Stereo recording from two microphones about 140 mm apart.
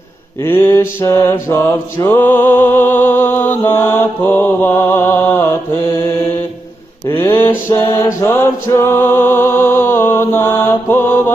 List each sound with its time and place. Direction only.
0.4 s mantra: 15° left (ahead or behind)
7.1 s mantra: 15° left (ahead or behind)
7.7 s music: 20° left (ahead or behind)